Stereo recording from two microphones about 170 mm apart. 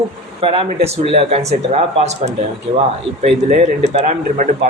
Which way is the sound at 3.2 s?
40° right (ahead or behind).